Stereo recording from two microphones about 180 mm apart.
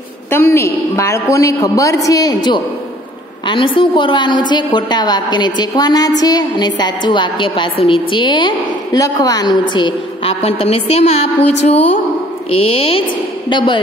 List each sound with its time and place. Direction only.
0.3 s a man's voice: 15° left (ahead or behind)